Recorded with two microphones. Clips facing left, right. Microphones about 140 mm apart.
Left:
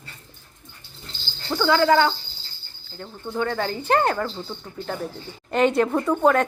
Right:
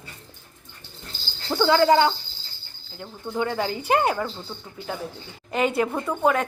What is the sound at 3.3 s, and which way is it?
Speech, 15° right (ahead or behind).